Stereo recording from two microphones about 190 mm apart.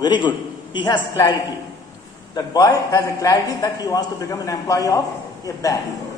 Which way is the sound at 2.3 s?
20° left (ahead or behind).